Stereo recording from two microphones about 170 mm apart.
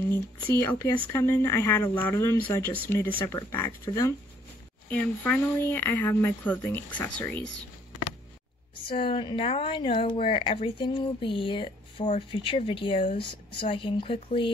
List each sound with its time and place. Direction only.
0.1 s speech: 10° left (ahead or behind)
8.8 s speech: 30° left (ahead or behind)